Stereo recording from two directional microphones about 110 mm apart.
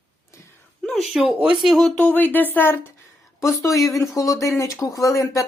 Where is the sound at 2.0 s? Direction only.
15° left (ahead or behind).